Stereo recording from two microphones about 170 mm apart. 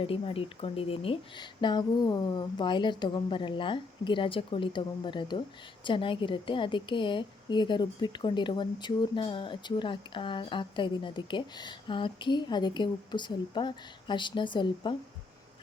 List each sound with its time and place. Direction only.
0.0 s a woman's voice: 35° left (ahead or behind)